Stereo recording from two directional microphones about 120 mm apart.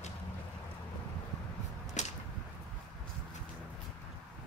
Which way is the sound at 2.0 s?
85° left.